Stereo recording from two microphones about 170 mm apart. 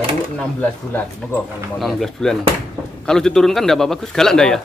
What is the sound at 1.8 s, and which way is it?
A man's voice, centre (ahead or behind).